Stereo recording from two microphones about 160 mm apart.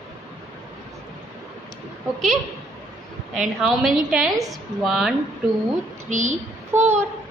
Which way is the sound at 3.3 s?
Centre (ahead or behind).